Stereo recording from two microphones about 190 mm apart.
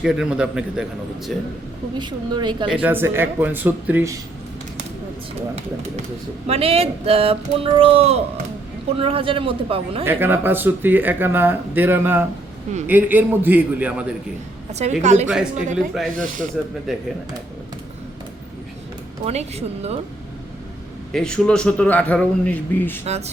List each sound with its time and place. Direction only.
0.0 s a man's voice: 5° right (ahead or behind)
2.0 s a man's voice: 25° right (ahead or behind)
2.8 s speech: 10° right (ahead or behind)
6.5 s a man's voice: 30° right (ahead or behind)
10.0 s speech: 10° right (ahead or behind)
14.7 s speech: 35° right (ahead or behind)
19.2 s speech: 35° right (ahead or behind)
21.1 s a man's voice: 5° left (ahead or behind)
23.0 s speech: 35° right (ahead or behind)